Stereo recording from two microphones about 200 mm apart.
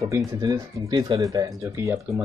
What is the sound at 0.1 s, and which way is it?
Speech, 15° right (ahead or behind).